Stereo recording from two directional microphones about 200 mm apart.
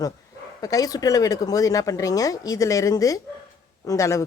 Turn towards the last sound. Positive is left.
turn(degrees=15)  # may be behind; listen again after turning